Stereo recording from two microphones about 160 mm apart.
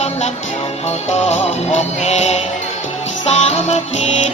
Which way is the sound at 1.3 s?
45° left (ahead or behind).